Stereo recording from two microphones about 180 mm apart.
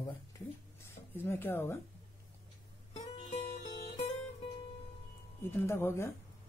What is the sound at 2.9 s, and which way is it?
Music, 40° left (ahead or behind).